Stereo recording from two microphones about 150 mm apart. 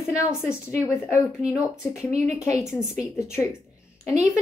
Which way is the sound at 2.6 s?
5° right (ahead or behind).